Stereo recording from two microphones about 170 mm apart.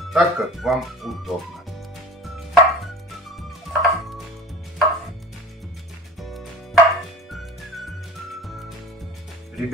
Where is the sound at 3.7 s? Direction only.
Centre (ahead or behind).